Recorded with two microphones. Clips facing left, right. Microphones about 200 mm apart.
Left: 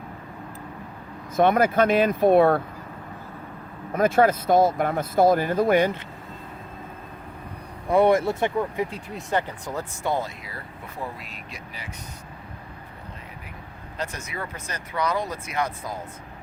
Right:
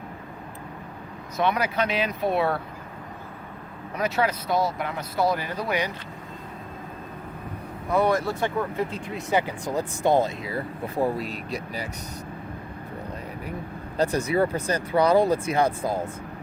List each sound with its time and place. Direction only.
1.4 s speech: 50° left (ahead or behind)
3.9 s speech: 50° left (ahead or behind)
7.9 s speech: 25° left (ahead or behind)
9.1 s speech: 10° right (ahead or behind); by 11.9 s 35° right (ahead or behind)
13.9 s speech: 35° right (ahead or behind)